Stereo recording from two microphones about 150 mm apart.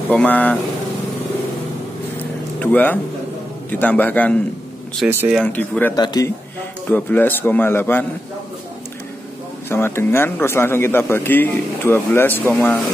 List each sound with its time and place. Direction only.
0.1 s a man's voice: 10° left (ahead or behind)
2.6 s a man's voice: 10° left (ahead or behind)
5.0 s speech: 10° right (ahead or behind)
5.4 s a man's voice: 10° left (ahead or behind)
5.9 s a man's voice: 25° left (ahead or behind)
6.9 s a man's voice: 10° left (ahead or behind)
9.7 s a man's voice: 15° left (ahead or behind)